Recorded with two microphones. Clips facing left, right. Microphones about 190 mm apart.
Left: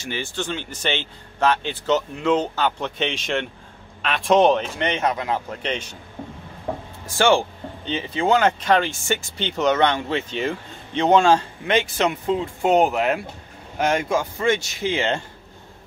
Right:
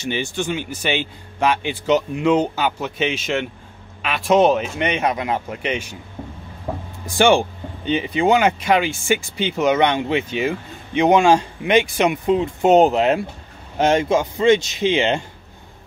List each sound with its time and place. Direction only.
0.0 s speech: 15° right (ahead or behind)
7.1 s speech: 15° right (ahead or behind)